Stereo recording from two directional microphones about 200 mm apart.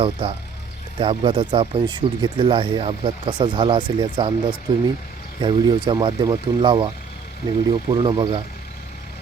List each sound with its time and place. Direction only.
0.0 s speech: 25° right (ahead or behind)